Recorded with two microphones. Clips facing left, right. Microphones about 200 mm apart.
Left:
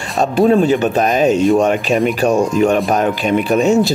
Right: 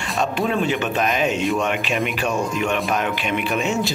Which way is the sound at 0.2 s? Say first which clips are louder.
Left 10 dB; 35° left (ahead or behind).